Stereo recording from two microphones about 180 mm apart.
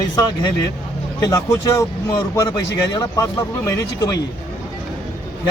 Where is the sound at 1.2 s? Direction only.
20° left (ahead or behind).